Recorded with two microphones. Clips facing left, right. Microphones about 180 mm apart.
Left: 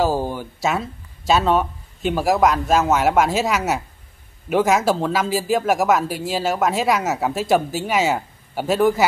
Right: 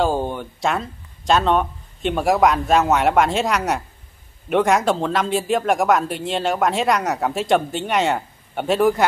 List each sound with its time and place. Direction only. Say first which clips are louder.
0.0 s speech: even; 5° left (ahead or behind)